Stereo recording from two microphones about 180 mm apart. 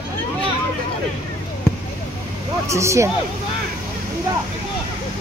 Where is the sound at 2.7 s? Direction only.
15° right (ahead or behind).